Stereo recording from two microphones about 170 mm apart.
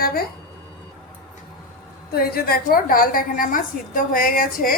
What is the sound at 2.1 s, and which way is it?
A woman's voice, 65° left (ahead or behind).